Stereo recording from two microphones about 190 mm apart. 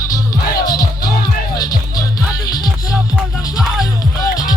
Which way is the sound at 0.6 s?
20° left (ahead or behind).